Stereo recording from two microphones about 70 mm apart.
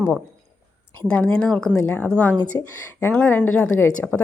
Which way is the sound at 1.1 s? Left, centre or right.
Centre.